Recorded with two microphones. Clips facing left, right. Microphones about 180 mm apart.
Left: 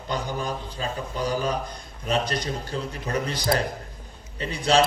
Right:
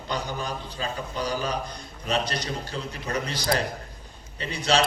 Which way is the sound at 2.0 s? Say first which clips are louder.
Left 2 dB; 50° left (ahead or behind).